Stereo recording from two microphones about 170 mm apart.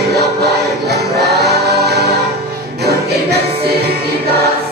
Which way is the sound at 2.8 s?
70° right (ahead or behind).